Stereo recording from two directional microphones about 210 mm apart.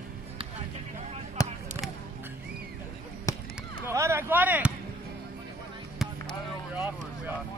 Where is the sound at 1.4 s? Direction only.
15° left (ahead or behind).